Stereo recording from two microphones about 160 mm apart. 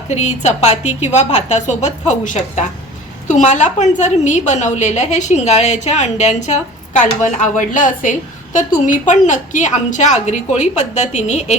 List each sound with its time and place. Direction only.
0.1 s a woman's voice: 45° left (ahead or behind)